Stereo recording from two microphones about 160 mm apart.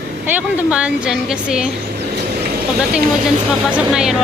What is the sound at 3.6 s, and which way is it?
Speech, 5° right (ahead or behind).